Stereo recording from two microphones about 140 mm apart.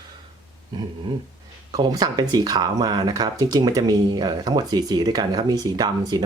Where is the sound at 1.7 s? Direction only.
25° right (ahead or behind).